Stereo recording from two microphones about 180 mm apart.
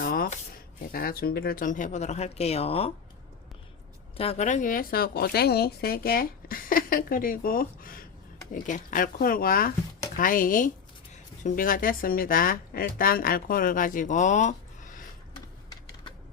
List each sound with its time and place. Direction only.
0.0 s speech: 55° left (ahead or behind); by 2.9 s 35° left (ahead or behind)
4.2 s speech: 35° left (ahead or behind)